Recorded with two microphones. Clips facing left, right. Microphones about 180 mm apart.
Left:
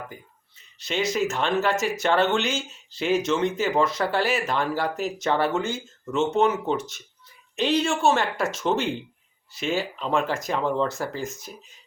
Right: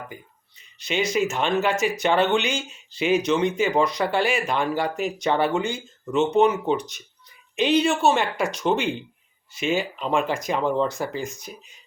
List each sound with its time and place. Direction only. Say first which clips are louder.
0.8 s speech: right 2 dB; centre (ahead or behind)
6.1 s speech: right 3 dB; 15° right (ahead or behind)
6.7 s speech: even; centre (ahead or behind)